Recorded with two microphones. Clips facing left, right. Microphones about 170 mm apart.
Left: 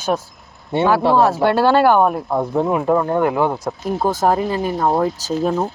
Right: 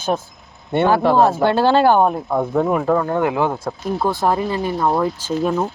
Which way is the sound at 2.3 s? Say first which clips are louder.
Even; 20° left (ahead or behind).